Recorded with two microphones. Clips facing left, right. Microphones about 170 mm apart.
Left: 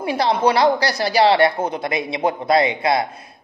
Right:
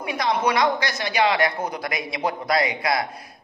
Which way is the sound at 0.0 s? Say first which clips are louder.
Left 5 dB; 30° left (ahead or behind).